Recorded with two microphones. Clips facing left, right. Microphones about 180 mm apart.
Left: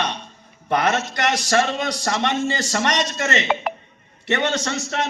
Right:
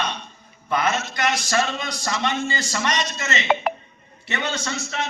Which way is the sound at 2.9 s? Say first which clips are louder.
Left 4 dB; 60° left (ahead or behind).